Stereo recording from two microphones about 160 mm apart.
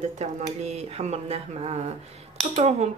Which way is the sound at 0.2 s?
45° right (ahead or behind).